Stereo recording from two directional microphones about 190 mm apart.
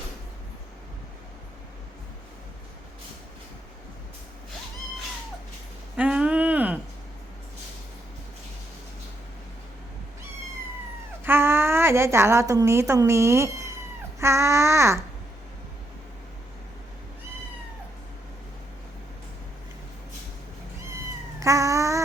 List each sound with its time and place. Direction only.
6.0 s a sound: 5° right (ahead or behind)
11.2 s a woman's voice: 10° right (ahead or behind)
14.2 s babbling: 15° right (ahead or behind)
21.4 s cat: 15° right (ahead or behind)